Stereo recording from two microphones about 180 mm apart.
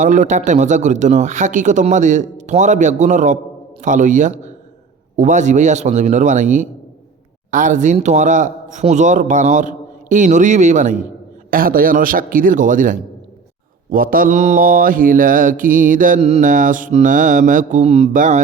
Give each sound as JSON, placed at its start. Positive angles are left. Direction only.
{"t": 0.0, "sound": "mantra", "side_deg": -45}